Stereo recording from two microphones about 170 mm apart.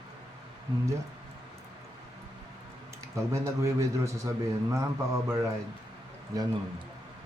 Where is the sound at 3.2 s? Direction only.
15° right (ahead or behind).